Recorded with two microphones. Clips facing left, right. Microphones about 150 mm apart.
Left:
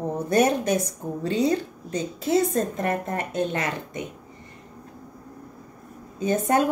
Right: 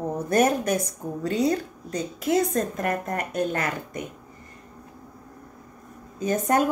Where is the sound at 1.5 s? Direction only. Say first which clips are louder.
Left 1 dB; 25° left (ahead or behind).